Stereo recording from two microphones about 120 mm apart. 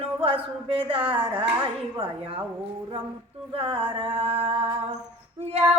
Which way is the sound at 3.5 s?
50° right (ahead or behind).